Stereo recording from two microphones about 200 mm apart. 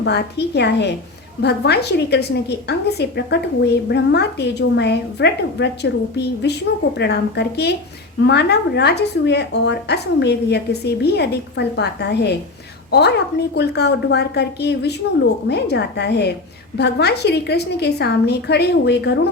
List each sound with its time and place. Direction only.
0.0 s a woman's voice: 55° left (ahead or behind)